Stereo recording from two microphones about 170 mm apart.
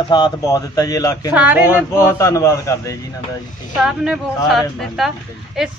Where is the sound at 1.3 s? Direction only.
10° right (ahead or behind).